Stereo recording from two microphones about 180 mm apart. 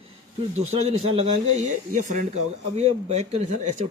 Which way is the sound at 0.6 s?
35° right (ahead or behind).